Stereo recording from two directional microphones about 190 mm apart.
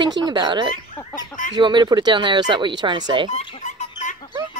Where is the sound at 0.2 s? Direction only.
25° right (ahead or behind).